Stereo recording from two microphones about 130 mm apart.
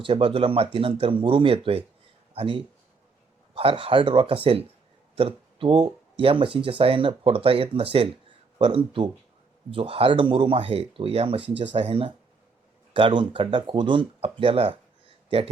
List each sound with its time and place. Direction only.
0.0 s speech: 45° right (ahead or behind)